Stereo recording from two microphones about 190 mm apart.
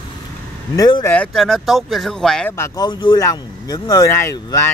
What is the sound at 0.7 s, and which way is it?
Speech, 20° left (ahead or behind).